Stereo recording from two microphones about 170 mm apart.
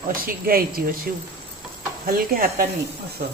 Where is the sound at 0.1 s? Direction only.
60° right (ahead or behind).